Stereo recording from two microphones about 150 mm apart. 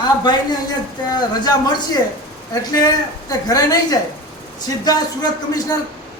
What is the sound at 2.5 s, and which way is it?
A woman's voice, 25° left (ahead or behind).